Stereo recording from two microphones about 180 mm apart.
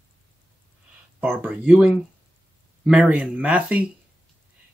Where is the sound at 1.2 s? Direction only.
10° right (ahead or behind).